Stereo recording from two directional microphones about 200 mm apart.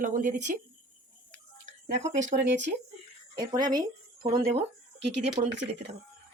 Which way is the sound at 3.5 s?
20° right (ahead or behind).